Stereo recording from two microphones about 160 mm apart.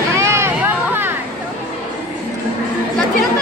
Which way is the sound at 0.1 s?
15° right (ahead or behind).